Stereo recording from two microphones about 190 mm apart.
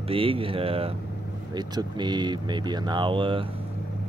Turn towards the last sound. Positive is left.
turn(degrees=-25)  # may be behind; listen again after turning